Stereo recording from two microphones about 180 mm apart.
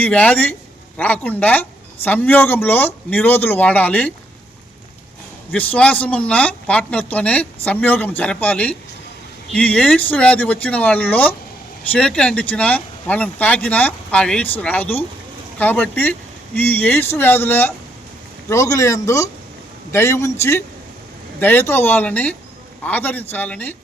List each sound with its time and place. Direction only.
0.0 s speech: 5° left (ahead or behind)
5.5 s speech: 10° left (ahead or behind)